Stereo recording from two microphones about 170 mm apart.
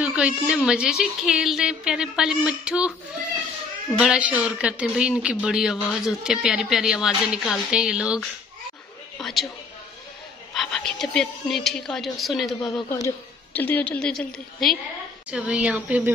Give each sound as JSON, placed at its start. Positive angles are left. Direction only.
{"t": 0.0, "sound": "a man's voice", "side_deg": -5}
{"t": 4.0, "sound": "a man's voice", "side_deg": -5}
{"t": 10.5, "sound": "a man's voice", "side_deg": 0}